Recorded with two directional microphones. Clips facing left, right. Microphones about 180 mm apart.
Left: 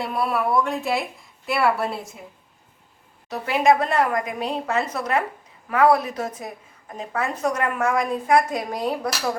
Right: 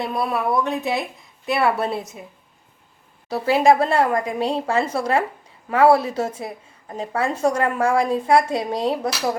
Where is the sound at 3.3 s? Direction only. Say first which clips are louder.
Right 3 dB; 30° right (ahead or behind).